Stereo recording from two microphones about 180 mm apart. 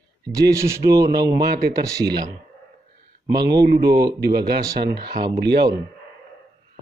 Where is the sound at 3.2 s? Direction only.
20° right (ahead or behind).